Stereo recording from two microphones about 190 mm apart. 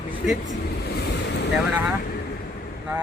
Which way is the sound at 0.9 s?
55° left (ahead or behind).